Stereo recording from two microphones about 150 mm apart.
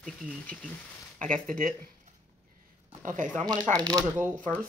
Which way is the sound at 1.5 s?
70° right (ahead or behind).